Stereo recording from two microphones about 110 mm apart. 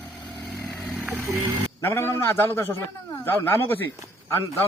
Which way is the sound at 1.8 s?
20° left (ahead or behind).